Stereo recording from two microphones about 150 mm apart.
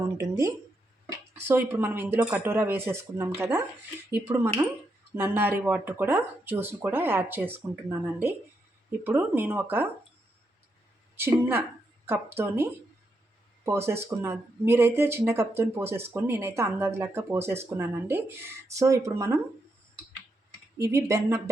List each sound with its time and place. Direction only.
0.2 s speech: 20° right (ahead or behind)
11.2 s speech: 15° right (ahead or behind)
13.7 s speech: 15° right (ahead or behind)
20.8 s speech: 20° right (ahead or behind)